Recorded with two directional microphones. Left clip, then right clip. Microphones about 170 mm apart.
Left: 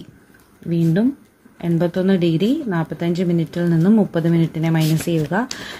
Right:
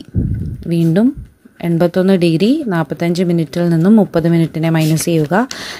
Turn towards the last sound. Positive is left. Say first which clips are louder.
# right 6 dB
turn(degrees=-30)  # may be behind; listen again after turning